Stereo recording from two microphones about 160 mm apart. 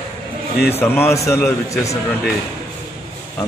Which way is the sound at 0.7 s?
15° left (ahead or behind).